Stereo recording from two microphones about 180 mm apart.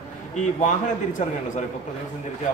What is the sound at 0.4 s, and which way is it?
Speech, 45° left (ahead or behind).